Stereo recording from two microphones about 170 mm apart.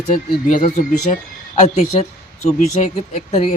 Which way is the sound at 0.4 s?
50° left (ahead or behind).